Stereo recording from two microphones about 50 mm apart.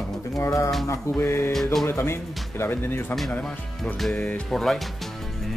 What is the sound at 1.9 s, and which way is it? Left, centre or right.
Speech, left.